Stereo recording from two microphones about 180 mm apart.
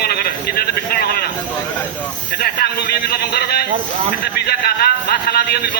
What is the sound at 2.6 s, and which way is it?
A man's voice, 60° left (ahead or behind).